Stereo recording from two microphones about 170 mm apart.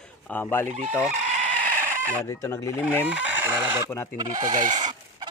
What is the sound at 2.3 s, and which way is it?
Speech, 20° left (ahead or behind).